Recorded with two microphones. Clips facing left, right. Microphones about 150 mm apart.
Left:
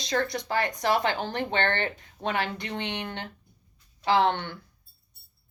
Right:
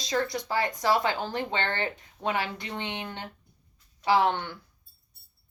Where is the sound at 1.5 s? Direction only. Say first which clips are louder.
Left 3 dB; 60° left (ahead or behind).